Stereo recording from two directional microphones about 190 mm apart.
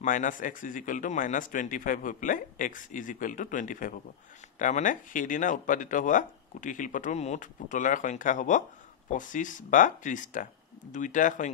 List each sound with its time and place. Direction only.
0.0 s speech: 45° left (ahead or behind)